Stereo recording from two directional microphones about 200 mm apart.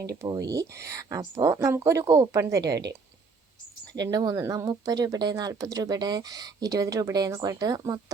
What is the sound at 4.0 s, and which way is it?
Speech, 20° right (ahead or behind).